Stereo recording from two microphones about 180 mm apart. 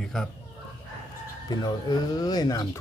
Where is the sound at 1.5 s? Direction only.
25° left (ahead or behind).